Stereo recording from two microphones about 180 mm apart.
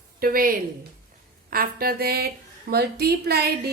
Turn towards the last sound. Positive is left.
turn(degrees=-60)  # may be behind; listen again after turning